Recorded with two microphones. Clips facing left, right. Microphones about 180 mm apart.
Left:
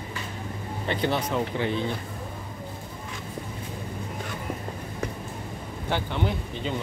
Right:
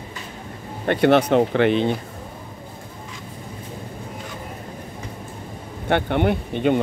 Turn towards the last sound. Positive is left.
turn(degrees=-65)  # may be behind; listen again after turning